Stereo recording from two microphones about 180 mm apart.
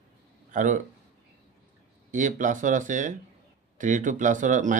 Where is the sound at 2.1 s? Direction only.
45° right (ahead or behind).